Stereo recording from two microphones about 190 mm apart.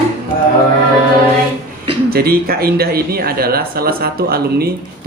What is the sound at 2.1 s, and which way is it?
Speech, 55° right (ahead or behind).